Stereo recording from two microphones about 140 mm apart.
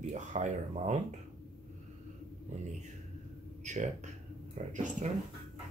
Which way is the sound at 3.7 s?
55° right (ahead or behind).